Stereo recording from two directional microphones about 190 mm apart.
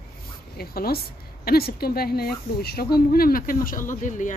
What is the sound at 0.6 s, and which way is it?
A woman's voice, 55° left (ahead or behind).